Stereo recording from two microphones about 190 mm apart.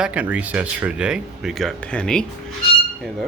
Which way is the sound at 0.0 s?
5° right (ahead or behind).